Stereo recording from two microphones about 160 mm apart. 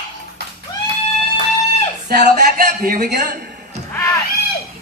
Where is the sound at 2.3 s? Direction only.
65° right (ahead or behind).